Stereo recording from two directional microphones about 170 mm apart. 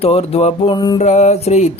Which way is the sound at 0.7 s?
25° left (ahead or behind).